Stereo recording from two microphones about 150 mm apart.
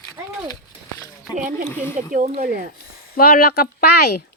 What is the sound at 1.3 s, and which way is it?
Speech, 60° right (ahead or behind).